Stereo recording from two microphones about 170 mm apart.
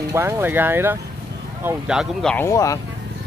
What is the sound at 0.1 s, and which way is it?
Speech, 15° right (ahead or behind).